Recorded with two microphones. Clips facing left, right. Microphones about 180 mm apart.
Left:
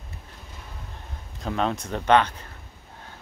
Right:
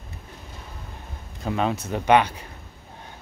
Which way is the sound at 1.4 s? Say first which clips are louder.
Right 1 dB; 5° right (ahead or behind).